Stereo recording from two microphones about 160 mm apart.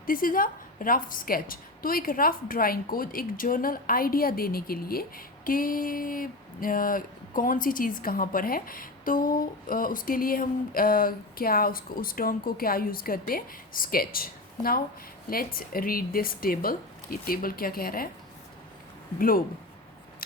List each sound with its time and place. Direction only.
0.0 s a woman's voice: 60° left (ahead or behind)